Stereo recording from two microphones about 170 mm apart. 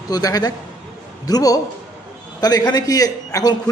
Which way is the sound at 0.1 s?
20° left (ahead or behind).